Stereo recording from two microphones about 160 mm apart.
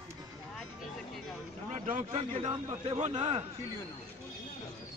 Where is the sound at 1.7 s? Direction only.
45° right (ahead or behind).